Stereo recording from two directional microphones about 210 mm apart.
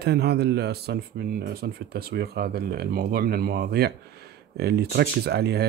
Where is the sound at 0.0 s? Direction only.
50° right (ahead or behind).